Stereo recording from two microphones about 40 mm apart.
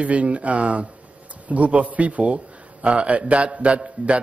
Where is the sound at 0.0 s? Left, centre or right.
Right.